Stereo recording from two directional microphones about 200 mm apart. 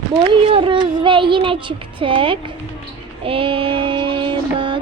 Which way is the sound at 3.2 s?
25° right (ahead or behind).